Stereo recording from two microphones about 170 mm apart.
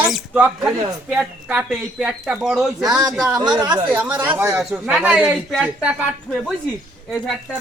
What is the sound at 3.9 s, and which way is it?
Speech, 10° right (ahead or behind).